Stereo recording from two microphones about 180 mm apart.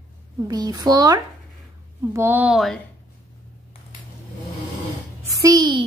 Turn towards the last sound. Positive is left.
turn(degrees=-25)  # may be behind; listen again after turning